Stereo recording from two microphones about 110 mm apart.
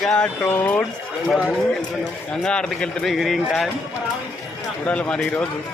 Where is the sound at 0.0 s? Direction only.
5° left (ahead or behind).